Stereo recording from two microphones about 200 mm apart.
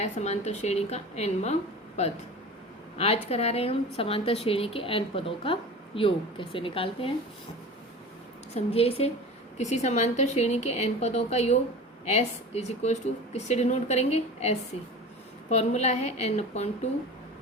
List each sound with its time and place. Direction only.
0.0 s a woman's voice: 35° left (ahead or behind)
8.5 s speech: 30° left (ahead or behind)